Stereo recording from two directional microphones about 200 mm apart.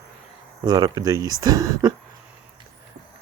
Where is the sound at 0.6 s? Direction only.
20° right (ahead or behind).